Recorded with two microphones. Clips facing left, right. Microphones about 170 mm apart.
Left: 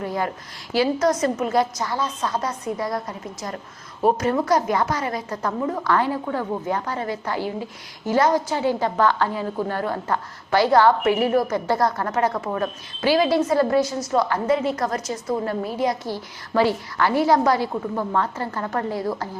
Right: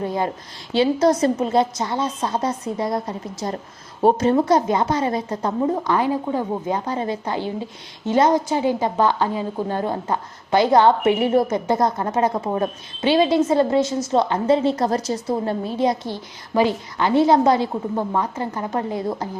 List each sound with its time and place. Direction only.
0.0 s a woman's voice: 25° right (ahead or behind)